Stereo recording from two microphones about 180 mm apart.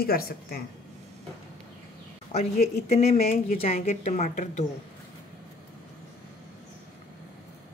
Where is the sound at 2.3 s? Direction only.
35° left (ahead or behind).